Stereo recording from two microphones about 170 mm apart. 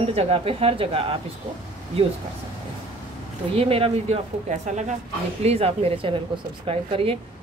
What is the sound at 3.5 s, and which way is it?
Speech, 35° right (ahead or behind).